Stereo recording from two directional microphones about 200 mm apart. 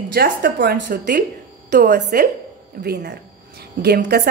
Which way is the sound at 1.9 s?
50° right (ahead or behind).